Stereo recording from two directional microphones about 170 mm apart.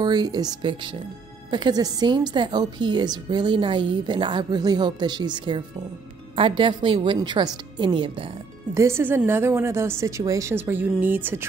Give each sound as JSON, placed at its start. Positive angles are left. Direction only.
{"t": 0.0, "sound": "a woman's voice", "side_deg": -25}
{"t": 8.7, "sound": "a woman's voice", "side_deg": -15}